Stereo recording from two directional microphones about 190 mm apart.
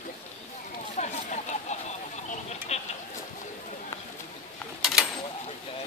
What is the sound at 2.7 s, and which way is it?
Sheep, 35° left (ahead or behind).